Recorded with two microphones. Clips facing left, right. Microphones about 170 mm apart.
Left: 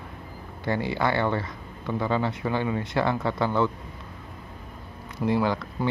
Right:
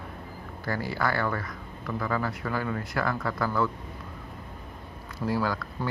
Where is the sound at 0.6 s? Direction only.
25° left (ahead or behind).